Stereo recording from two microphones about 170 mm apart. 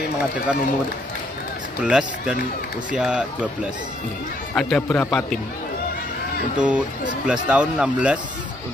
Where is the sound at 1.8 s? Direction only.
5° right (ahead or behind).